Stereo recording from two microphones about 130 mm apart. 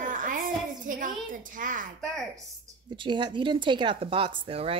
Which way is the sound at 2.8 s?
35° right (ahead or behind).